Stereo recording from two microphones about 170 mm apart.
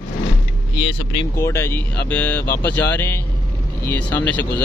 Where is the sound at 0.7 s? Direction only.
30° left (ahead or behind).